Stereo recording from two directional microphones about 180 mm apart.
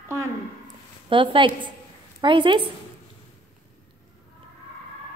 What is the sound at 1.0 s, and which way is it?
A woman's voice, 25° right (ahead or behind).